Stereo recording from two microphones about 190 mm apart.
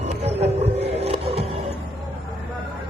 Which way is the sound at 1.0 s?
30° right (ahead or behind).